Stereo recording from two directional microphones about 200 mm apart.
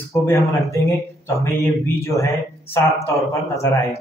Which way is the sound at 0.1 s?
15° left (ahead or behind).